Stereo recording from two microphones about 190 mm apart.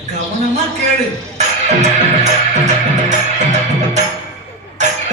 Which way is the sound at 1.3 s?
35° right (ahead or behind).